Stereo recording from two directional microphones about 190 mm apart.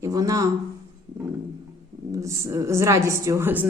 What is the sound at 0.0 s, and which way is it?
Speech, 20° right (ahead or behind).